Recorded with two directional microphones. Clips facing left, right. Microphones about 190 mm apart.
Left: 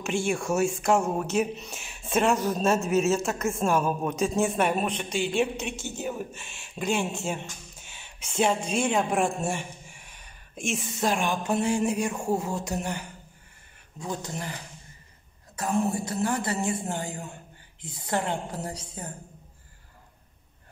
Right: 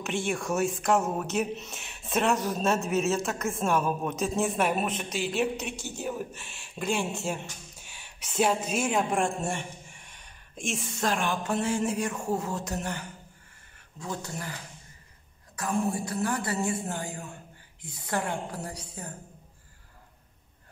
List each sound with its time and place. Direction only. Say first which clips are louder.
0.0 s speech: left 3 dB; centre (ahead or behind)
7.8 s a sound: left 1 dB; 5° right (ahead or behind)
8.4 s a man's voice: left 1 dB; 5° right (ahead or behind)
11.1 s speech: left 2 dB; 15° left (ahead or behind)
15.5 s speech: left 2 dB; 25° left (ahead or behind)
18.0 s speech: left 2 dB; 25° left (ahead or behind)